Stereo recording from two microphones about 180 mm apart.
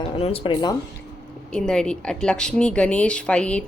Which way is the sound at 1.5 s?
5° left (ahead or behind).